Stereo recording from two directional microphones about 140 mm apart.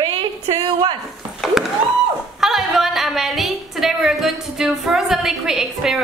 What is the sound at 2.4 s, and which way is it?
A woman's voice, centre (ahead or behind).